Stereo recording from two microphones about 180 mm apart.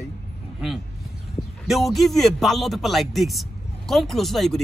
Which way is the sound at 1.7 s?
Centre (ahead or behind).